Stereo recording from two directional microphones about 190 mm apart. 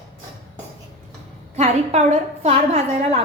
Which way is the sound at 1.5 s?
35° right (ahead or behind).